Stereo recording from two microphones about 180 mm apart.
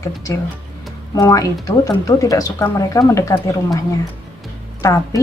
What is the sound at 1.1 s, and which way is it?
Speech, 20° left (ahead or behind).